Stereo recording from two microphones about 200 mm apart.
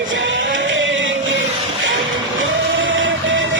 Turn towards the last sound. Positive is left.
turn(degrees=-70)  # may be behind; listen again after turning